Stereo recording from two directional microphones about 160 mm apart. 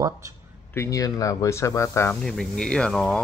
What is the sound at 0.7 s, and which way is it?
Speech, 20° left (ahead or behind).